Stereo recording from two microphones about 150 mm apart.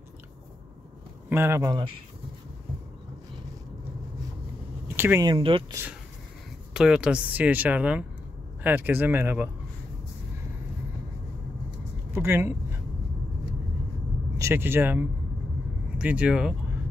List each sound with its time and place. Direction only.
1.3 s speech: 15° right (ahead or behind)
4.8 s a sound: 15° right (ahead or behind)
5.2 s speech: 35° right (ahead or behind)
6.7 s speech: 5° right (ahead or behind)
12.1 s vehicle: 15° right (ahead or behind)
14.3 s speech: 15° right (ahead or behind)